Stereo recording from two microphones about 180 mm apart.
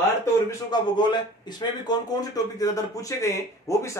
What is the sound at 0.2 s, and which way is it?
A man's voice, 20° left (ahead or behind).